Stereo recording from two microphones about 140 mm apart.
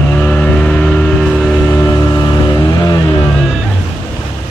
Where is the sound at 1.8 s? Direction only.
15° left (ahead or behind).